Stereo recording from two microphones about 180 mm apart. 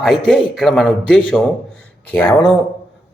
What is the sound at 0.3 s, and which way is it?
A man's voice, 5° left (ahead or behind).